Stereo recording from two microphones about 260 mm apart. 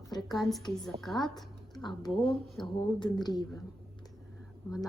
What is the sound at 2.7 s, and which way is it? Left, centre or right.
Speech, centre.